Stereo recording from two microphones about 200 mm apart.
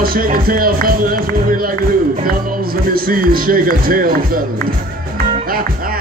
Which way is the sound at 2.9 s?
45° right (ahead or behind).